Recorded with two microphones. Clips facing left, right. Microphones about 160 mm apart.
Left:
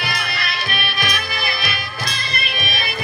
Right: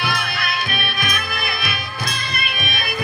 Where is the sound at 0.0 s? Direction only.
55° right (ahead or behind).